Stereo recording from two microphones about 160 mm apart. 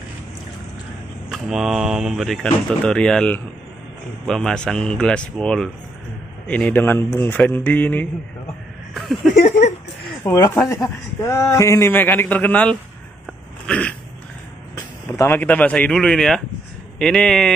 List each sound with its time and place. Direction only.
1.3 s a man's voice: centre (ahead or behind)
8.9 s speech: centre (ahead or behind)
9.3 s a sound: 50° left (ahead or behind)
10.3 s a man's voice: 20° left (ahead or behind)
13.7 s a sound: 5° left (ahead or behind)
15.1 s a man's voice: 15° left (ahead or behind)